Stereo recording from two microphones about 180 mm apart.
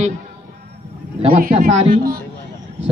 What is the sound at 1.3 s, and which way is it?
Speech, 50° right (ahead or behind).